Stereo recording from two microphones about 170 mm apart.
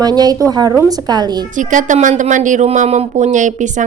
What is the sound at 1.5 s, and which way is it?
Speech, 50° right (ahead or behind).